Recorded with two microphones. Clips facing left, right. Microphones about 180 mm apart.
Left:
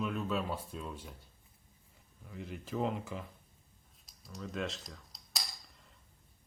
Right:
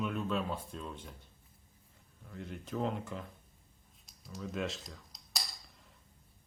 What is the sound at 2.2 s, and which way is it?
Speech, 5° left (ahead or behind).